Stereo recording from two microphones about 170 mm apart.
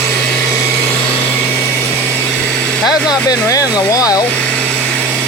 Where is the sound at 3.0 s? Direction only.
20° left (ahead or behind).